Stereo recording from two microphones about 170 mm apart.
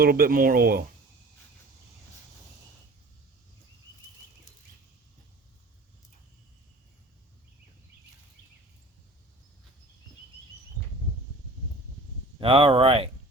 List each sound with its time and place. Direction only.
0.0 s speech: 60° right (ahead or behind)
12.4 s speech: 30° right (ahead or behind)